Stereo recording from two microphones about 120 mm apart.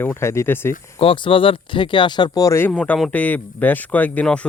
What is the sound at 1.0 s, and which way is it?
Speech, 50° left (ahead or behind).